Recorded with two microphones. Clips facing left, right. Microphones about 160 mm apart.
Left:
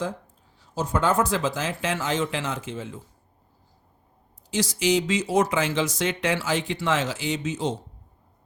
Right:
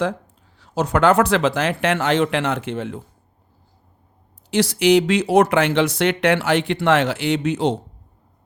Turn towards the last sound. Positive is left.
turn(degrees=-65)  # may be behind; listen again after turning